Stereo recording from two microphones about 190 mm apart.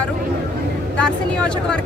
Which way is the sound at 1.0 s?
5° left (ahead or behind).